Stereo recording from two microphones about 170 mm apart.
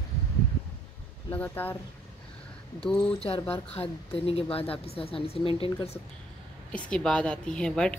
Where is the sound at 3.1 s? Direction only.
35° left (ahead or behind).